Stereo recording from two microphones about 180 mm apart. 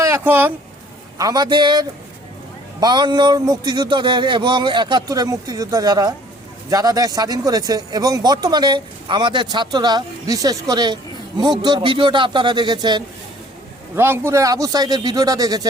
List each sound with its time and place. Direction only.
0.0 s speech: 15° right (ahead or behind)
1.2 s speech: 20° right (ahead or behind)
13.9 s speech: 15° right (ahead or behind)